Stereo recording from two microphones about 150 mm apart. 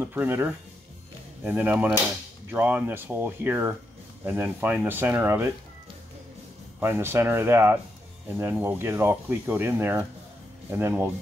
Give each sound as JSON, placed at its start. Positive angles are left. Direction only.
{"t": 0.0, "sound": "speech", "side_deg": -15}
{"t": 6.8, "sound": "speech", "side_deg": -15}